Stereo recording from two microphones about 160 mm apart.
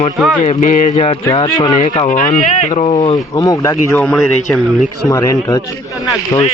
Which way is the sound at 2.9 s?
25° left (ahead or behind).